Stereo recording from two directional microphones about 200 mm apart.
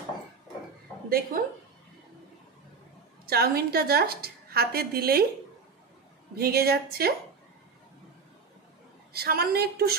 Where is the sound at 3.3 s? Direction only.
50° right (ahead or behind).